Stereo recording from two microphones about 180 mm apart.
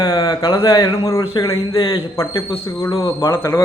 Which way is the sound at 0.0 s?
20° left (ahead or behind).